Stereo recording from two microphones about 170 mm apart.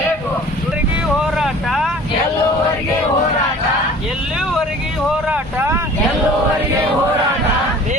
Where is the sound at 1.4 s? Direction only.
Centre (ahead or behind).